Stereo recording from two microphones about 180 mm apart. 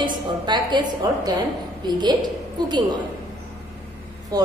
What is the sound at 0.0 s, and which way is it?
A woman's voice, 25° right (ahead or behind).